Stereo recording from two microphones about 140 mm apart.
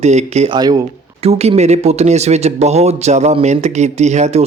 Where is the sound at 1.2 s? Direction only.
50° right (ahead or behind).